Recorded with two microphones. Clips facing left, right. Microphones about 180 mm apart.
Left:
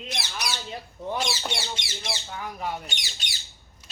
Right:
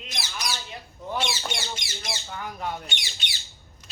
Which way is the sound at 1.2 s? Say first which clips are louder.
Right 2 dB; 40° left (ahead or behind).